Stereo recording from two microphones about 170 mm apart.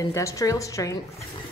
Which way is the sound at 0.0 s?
20° left (ahead or behind).